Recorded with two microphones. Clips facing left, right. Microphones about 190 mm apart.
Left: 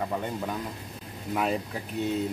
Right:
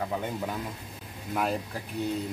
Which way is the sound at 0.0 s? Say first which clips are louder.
Left 1 dB; 5° right (ahead or behind).